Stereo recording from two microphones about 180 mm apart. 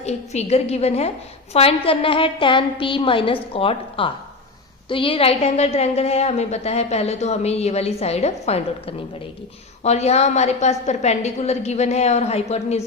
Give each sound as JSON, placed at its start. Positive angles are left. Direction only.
{"t": 0.0, "sound": "a woman's voice", "side_deg": 35}